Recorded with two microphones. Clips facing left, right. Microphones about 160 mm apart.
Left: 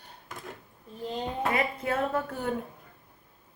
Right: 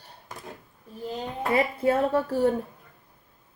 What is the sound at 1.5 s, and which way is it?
Speech, 30° right (ahead or behind).